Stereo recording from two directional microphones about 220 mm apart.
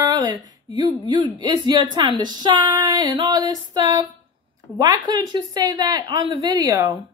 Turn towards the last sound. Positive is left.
turn(degrees=-15)  # may be behind; listen again after turning